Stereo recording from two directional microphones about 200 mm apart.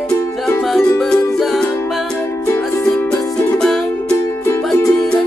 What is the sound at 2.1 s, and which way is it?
Music, 15° left (ahead or behind).